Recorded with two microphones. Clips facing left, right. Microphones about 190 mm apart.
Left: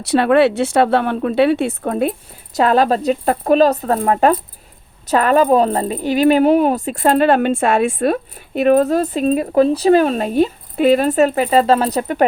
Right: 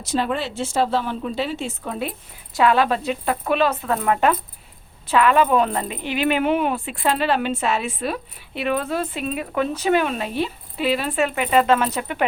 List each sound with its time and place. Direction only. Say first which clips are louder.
0.0 s speech: left 11 dB; 65° left (ahead or behind); by 12.2 s 40° left (ahead or behind)